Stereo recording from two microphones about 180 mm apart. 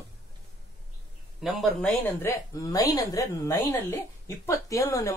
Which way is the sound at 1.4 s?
Centre (ahead or behind).